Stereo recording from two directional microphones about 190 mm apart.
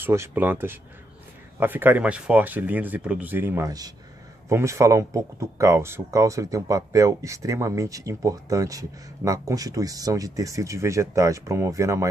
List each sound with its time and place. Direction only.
0.0 s speech: 10° right (ahead or behind)